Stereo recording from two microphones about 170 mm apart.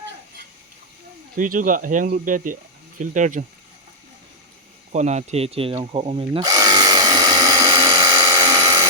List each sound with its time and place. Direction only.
1.4 s speech: 55° right (ahead or behind)
4.9 s speech: 40° right (ahead or behind)
5.7 s a sound: 30° right (ahead or behind)